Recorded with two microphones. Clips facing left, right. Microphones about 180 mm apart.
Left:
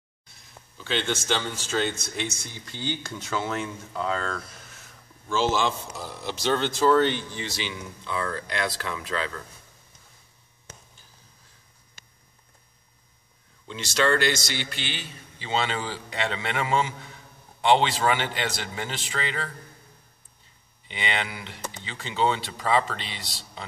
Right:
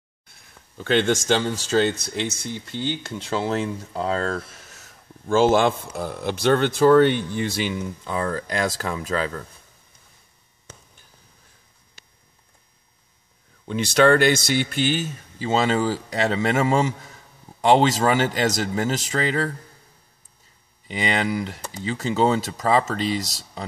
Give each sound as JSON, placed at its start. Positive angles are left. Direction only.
{"t": 0.7, "sound": "a man's voice", "side_deg": -50}
{"t": 5.3, "sound": "a man's voice", "side_deg": -50}
{"t": 12.0, "sound": "a sound", "side_deg": 45}
{"t": 13.7, "sound": "a man's voice", "side_deg": -55}
{"t": 20.9, "sound": "speech", "side_deg": -40}